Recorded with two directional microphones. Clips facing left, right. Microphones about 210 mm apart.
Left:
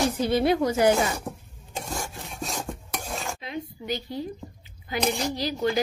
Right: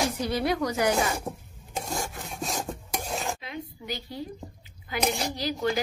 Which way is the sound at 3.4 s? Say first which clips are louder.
Left 4 dB; 25° left (ahead or behind).